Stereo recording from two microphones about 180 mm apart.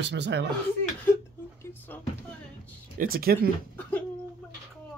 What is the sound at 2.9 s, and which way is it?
Speech, 55° right (ahead or behind).